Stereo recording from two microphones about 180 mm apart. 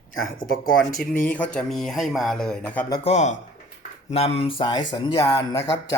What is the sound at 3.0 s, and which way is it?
Speech, 40° left (ahead or behind).